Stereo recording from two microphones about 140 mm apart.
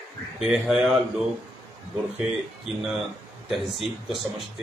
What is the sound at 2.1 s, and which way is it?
Speech, centre (ahead or behind).